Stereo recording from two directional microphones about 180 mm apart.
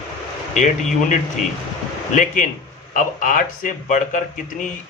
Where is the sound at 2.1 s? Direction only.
45° left (ahead or behind).